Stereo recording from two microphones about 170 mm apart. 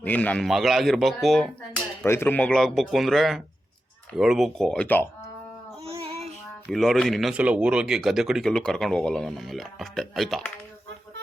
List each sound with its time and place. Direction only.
0.0 s speech: 10° left (ahead or behind)
2.0 s speech: 10° left (ahead or behind)
5.8 s child singing: 35° right (ahead or behind)
6.7 s speech: centre (ahead or behind)